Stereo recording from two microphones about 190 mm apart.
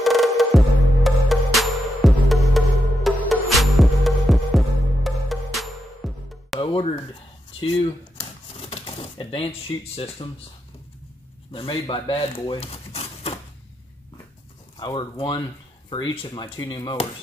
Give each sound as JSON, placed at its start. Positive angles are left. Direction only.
{"t": 0.0, "sound": "music", "side_deg": 0}
{"t": 6.6, "sound": "a sound", "side_deg": 30}
{"t": 7.6, "sound": "typewriter", "side_deg": 30}
{"t": 11.5, "sound": "speech", "side_deg": 25}
{"t": 14.8, "sound": "speech", "side_deg": 25}